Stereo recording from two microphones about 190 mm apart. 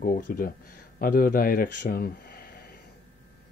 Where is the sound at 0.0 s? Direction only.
45° left (ahead or behind).